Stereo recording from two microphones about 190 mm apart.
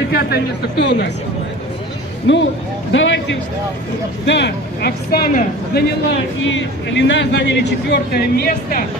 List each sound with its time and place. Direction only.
0.1 s speech: 55° left (ahead or behind)
2.3 s speech: 75° left (ahead or behind)
4.3 s speech: 60° left (ahead or behind)
6.4 s speech: 70° left (ahead or behind); by 8.8 s 55° left (ahead or behind)